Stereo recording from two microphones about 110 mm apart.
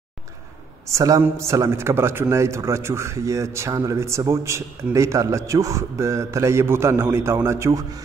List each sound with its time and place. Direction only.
0.8 s a man's voice: 30° right (ahead or behind)